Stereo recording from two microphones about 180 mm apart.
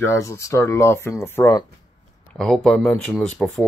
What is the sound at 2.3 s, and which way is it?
Speech, 5° left (ahead or behind).